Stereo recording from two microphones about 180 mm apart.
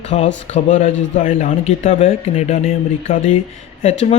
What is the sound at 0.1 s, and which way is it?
Speech, 40° left (ahead or behind).